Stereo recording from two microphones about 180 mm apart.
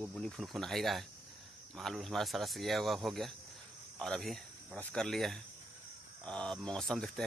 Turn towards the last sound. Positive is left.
turn(degrees=0)  # may be behind; listen again after turning